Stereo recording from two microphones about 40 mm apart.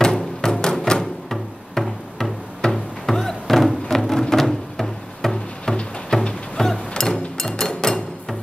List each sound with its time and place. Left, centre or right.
0.0 s music: centre